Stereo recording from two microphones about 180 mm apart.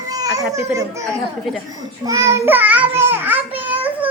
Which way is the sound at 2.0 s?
15° right (ahead or behind).